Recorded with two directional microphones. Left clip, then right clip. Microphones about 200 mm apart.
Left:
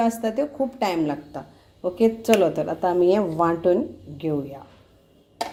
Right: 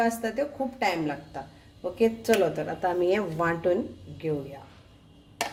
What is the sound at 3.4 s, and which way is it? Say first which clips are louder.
Speech: left 6 dB; 5° right (ahead or behind).